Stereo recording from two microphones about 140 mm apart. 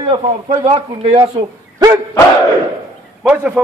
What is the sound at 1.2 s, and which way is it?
Speech, 30° right (ahead or behind).